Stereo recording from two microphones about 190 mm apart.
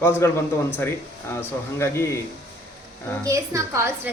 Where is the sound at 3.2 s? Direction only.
15° right (ahead or behind).